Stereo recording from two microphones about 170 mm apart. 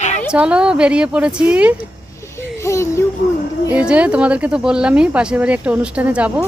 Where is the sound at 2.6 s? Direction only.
15° left (ahead or behind).